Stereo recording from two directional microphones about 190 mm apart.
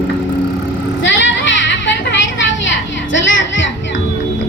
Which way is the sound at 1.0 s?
75° left (ahead or behind).